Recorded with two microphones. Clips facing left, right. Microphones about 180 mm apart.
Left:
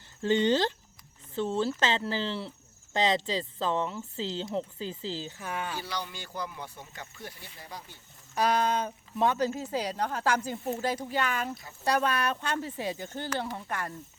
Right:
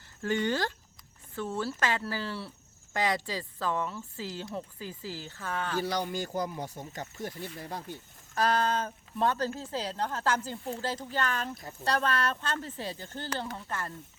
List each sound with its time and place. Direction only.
0.2 s speech: 20° left (ahead or behind)
5.8 s speech: 45° right (ahead or behind)
8.4 s speech: 15° left (ahead or behind)